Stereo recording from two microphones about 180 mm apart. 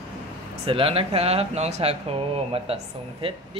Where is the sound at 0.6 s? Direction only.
30° right (ahead or behind).